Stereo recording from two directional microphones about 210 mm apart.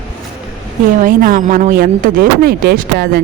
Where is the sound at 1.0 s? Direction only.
40° right (ahead or behind).